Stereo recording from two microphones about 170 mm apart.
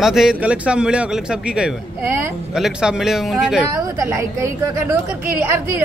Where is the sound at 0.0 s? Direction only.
Centre (ahead or behind).